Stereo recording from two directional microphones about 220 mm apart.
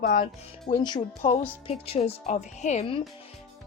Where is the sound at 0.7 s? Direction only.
20° left (ahead or behind).